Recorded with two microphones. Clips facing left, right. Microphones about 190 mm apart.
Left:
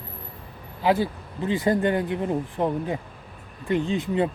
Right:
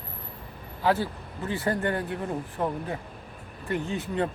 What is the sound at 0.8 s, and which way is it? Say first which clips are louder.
Speech: left 3 dB; 15° left (ahead or behind).